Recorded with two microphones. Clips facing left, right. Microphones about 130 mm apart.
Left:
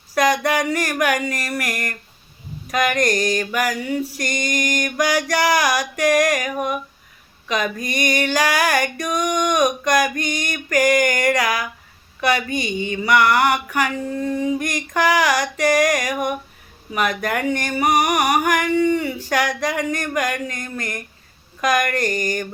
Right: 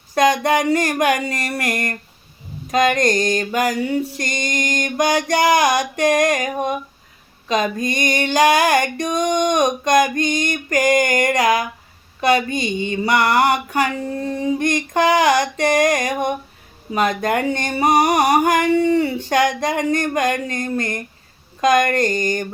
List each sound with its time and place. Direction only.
0.1 s a sound: 25° right (ahead or behind)
0.7 s female singing: 25° right (ahead or behind)
21.6 s a woman's voice: 25° right (ahead or behind)
21.9 s female singing: 25° right (ahead or behind)